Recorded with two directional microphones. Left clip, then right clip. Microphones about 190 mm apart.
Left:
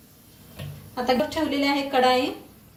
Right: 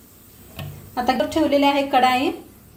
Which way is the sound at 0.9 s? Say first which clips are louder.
Right 3 dB; 55° right (ahead or behind).